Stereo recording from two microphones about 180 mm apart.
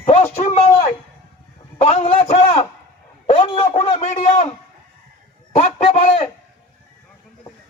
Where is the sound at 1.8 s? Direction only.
35° left (ahead or behind).